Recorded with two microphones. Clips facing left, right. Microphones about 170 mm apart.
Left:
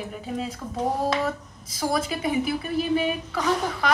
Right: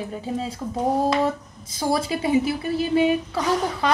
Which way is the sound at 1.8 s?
30° right (ahead or behind).